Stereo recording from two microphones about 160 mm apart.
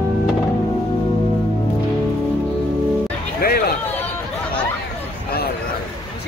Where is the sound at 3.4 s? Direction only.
70° left (ahead or behind).